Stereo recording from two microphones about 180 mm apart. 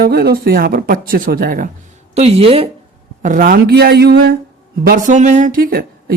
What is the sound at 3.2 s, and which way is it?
Speech, 50° right (ahead or behind).